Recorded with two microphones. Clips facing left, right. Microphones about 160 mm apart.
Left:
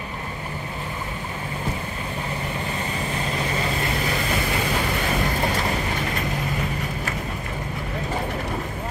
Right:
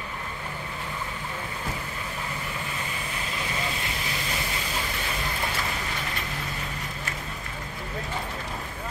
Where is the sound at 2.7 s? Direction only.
40° left (ahead or behind); by 5.3 s 65° left (ahead or behind).